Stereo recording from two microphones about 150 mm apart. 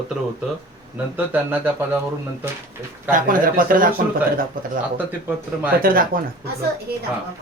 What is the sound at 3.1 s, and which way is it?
Speech, 65° right (ahead or behind).